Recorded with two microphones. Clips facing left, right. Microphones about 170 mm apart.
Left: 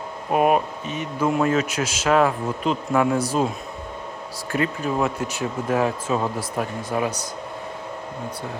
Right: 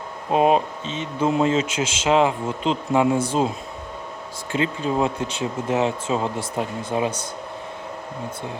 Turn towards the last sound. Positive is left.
turn(degrees=-20)  # may be behind; listen again after turning